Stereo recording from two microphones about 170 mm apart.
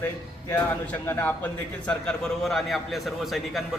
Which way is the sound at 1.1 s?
10° left (ahead or behind).